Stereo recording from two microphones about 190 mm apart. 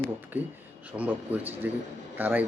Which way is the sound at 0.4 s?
10° right (ahead or behind).